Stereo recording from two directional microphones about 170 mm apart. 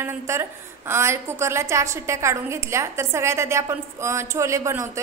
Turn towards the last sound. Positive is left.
turn(degrees=-15)  # may be behind; listen again after turning